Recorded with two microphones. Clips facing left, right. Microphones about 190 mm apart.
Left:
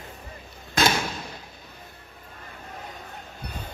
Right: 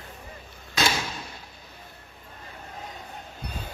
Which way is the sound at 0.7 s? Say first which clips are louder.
Left 3 dB; 50° left (ahead or behind).